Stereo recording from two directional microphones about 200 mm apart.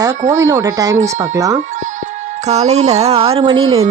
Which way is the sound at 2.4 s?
35° right (ahead or behind).